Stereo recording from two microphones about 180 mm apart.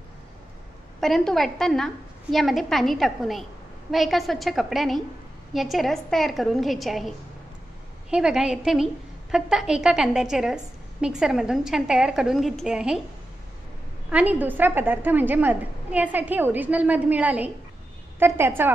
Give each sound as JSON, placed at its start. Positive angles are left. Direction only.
{"t": 1.0, "sound": "a woman's voice", "side_deg": 0}
{"t": 14.1, "sound": "a woman's voice", "side_deg": -10}